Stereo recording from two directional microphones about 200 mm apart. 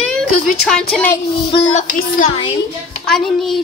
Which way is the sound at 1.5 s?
30° left (ahead or behind).